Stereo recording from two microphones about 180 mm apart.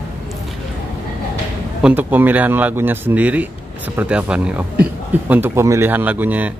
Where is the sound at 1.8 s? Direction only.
10° right (ahead or behind).